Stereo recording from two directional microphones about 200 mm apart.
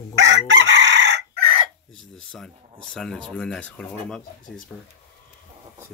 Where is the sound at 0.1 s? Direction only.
65° right (ahead or behind).